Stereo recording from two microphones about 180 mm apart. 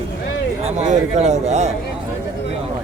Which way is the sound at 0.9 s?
40° right (ahead or behind).